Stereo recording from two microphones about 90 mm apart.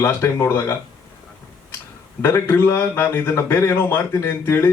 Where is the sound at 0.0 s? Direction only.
30° left (ahead or behind).